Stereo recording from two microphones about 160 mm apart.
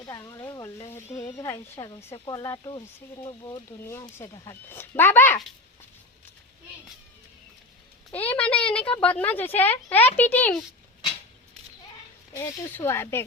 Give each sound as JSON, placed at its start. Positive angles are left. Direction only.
{"t": 0.0, "sound": "sizzle", "side_deg": 20}
{"t": 1.2, "sound": "a woman's voice", "side_deg": 20}
{"t": 8.3, "sound": "speech", "side_deg": 10}
{"t": 12.3, "sound": "speech", "side_deg": 15}